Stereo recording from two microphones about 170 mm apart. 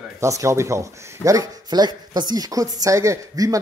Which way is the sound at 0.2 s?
20° right (ahead or behind).